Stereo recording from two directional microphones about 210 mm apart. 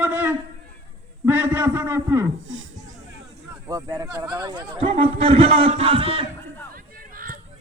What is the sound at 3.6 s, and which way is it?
A man's voice, 15° right (ahead or behind).